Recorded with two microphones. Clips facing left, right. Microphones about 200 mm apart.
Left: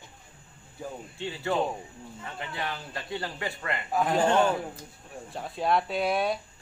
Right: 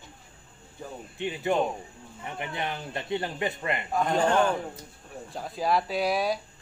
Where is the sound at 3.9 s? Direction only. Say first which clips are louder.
Left 1 dB; 5° left (ahead or behind).